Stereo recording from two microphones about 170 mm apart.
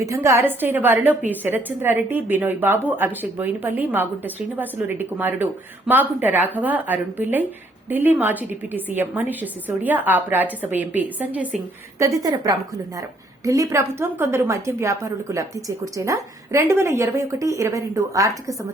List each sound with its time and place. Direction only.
0.0 s a woman's voice: 15° right (ahead or behind)